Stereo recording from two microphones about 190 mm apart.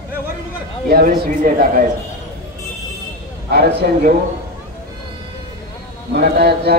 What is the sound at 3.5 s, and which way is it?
Speech, 55° right (ahead or behind).